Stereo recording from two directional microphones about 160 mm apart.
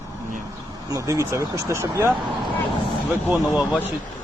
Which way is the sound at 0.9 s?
20° right (ahead or behind).